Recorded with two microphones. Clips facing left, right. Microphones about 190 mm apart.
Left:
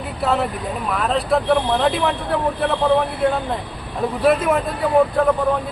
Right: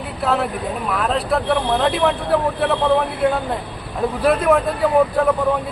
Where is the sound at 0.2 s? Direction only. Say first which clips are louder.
Even; centre (ahead or behind).